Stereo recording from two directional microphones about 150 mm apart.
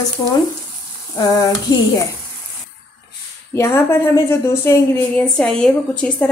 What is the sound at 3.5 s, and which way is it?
A woman's voice, 15° left (ahead or behind).